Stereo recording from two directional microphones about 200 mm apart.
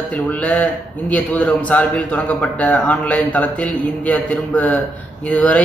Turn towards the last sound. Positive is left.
turn(degrees=5)  # may be behind; listen again after turning